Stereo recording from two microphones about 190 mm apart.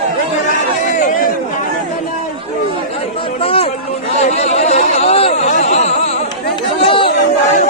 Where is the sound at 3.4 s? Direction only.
30° left (ahead or behind).